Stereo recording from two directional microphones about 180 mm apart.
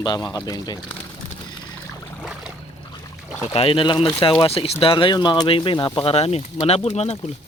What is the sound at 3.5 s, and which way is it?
Speech, 30° left (ahead or behind).